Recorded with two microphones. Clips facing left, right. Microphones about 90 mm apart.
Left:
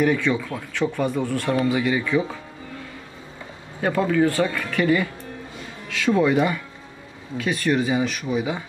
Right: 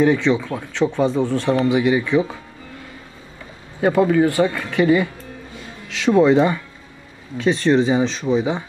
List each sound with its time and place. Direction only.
0.0 s speech: 20° right (ahead or behind)
3.8 s speech: 20° right (ahead or behind)